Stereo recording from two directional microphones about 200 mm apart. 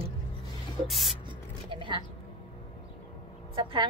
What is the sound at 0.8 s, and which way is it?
Speech, centre (ahead or behind).